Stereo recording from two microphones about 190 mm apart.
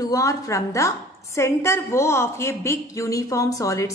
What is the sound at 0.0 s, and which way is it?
A woman's voice, 15° left (ahead or behind).